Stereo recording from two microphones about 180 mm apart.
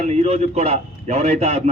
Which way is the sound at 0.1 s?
35° right (ahead or behind).